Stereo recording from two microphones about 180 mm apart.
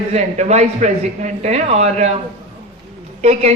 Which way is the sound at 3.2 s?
40° right (ahead or behind).